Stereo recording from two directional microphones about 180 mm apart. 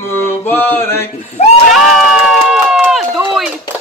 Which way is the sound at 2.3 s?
Centre (ahead or behind).